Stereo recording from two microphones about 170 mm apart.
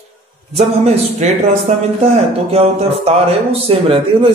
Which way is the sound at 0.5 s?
40° right (ahead or behind).